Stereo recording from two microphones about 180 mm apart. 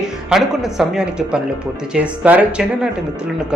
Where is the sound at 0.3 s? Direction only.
Centre (ahead or behind).